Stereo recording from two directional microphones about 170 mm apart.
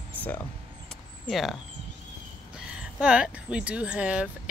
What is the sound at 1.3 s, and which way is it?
Speech, centre (ahead or behind).